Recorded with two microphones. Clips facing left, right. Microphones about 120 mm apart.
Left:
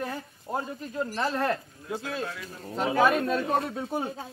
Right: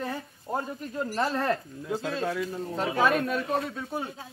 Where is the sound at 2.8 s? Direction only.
25° left (ahead or behind).